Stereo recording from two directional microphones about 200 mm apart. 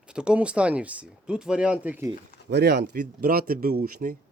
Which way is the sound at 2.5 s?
55° right (ahead or behind).